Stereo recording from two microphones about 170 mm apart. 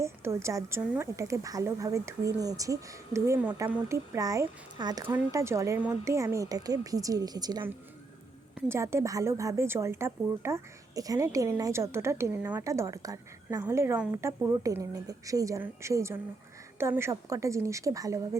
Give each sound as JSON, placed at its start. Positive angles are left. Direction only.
{"t": 0.0, "sound": "a woman's voice", "side_deg": -15}